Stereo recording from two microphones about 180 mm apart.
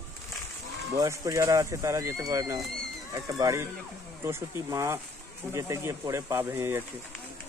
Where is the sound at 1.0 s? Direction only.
15° right (ahead or behind).